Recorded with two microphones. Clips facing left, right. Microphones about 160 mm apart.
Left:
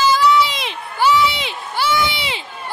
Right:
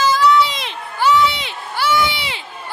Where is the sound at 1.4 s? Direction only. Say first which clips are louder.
Left 1 dB; 20° left (ahead or behind).